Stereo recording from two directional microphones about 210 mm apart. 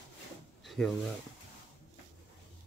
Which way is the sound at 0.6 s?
Centre (ahead or behind).